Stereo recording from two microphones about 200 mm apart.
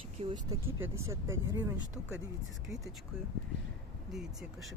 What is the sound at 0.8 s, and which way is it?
Speech, 15° right (ahead or behind).